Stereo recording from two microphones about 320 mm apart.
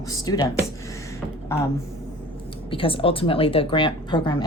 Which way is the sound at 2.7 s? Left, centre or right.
Centre.